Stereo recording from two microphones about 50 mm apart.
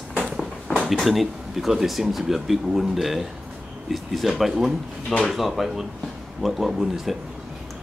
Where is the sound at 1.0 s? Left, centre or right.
Centre.